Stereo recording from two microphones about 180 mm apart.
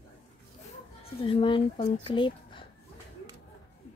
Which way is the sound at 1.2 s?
30° left (ahead or behind).